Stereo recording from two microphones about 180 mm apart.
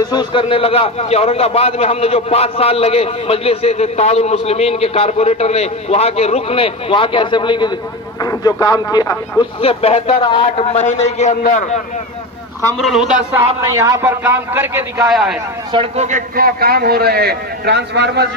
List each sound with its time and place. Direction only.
0.1 s a man's voice: 25° left (ahead or behind)
9.6 s a man's voice: 30° left (ahead or behind)
12.7 s a man's voice: centre (ahead or behind)
13.7 s a man's voice: 15° right (ahead or behind)
15.7 s a man's voice: 30° right (ahead or behind)
16.1 s a man's voice: 50° right (ahead or behind); by 18.3 s 70° right (ahead or behind)